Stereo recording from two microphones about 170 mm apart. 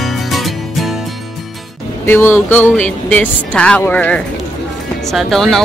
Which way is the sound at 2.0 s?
15° left (ahead or behind).